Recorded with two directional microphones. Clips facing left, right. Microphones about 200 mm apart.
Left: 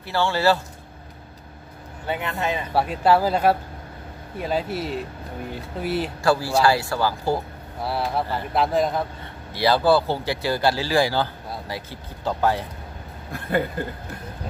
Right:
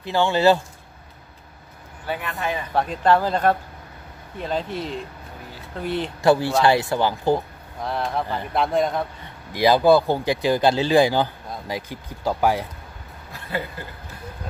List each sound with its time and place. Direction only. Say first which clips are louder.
0.0 s speech: right 3 dB; 15° right (ahead or behind)
2.0 s speech: left 1 dB; 20° left (ahead or behind)
2.7 s speech: even; 10° left (ahead or behind)
6.2 s speech: right 3 dB; 20° right (ahead or behind)
7.8 s speech: even; 5° left (ahead or behind)
9.5 s speech: right 3 dB; 15° right (ahead or behind)